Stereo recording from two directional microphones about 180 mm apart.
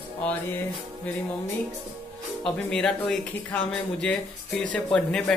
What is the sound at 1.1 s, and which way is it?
Speech, 10° left (ahead or behind).